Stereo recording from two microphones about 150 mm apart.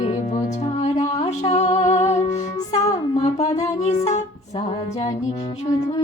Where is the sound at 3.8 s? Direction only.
50° left (ahead or behind).